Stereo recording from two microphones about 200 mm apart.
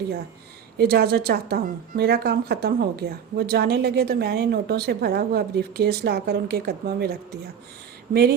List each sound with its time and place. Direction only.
0.8 s a woman's voice: 50° right (ahead or behind)